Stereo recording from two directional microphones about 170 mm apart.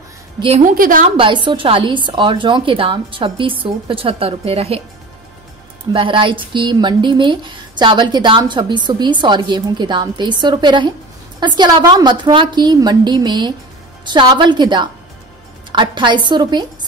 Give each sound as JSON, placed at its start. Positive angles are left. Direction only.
{"t": 0.7, "sound": "a woman's voice", "side_deg": -55}
{"t": 1.0, "sound": "a woman's voice", "side_deg": -30}
{"t": 5.9, "sound": "speech", "side_deg": -30}